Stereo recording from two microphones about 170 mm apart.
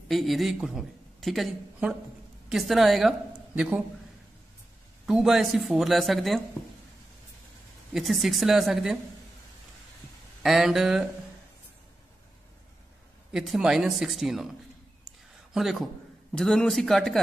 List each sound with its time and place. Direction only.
0.1 s speech: centre (ahead or behind)
5.0 s speech: 5° right (ahead or behind)
7.9 s speech: centre (ahead or behind)
10.4 s speech: centre (ahead or behind)
13.3 s speech: 5° right (ahead or behind)
15.0 s a sound: centre (ahead or behind)
16.3 s speech: 5° left (ahead or behind)